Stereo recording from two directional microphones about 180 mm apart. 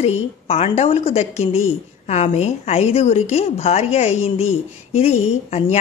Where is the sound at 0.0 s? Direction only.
35° left (ahead or behind).